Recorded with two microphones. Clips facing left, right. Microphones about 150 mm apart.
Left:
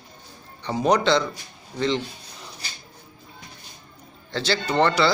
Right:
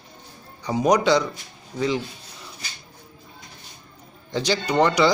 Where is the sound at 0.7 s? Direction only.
10° right (ahead or behind).